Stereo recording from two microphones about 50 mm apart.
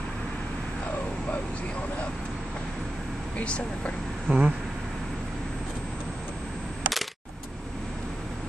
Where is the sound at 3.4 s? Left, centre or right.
Left.